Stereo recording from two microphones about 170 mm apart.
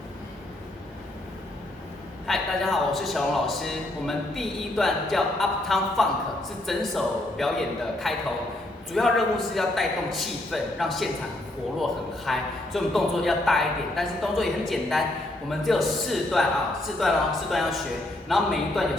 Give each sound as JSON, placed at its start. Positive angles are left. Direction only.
{"t": 2.2, "sound": "a man's voice", "side_deg": 0}